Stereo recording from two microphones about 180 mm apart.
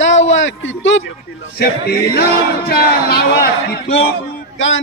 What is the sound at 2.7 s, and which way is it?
A man's voice, 60° left (ahead or behind).